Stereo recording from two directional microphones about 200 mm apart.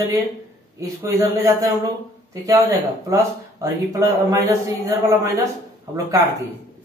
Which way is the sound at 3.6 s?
15° right (ahead or behind).